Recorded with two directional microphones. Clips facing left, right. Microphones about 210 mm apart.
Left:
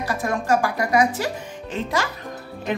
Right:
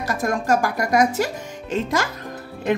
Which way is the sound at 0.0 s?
45° right (ahead or behind).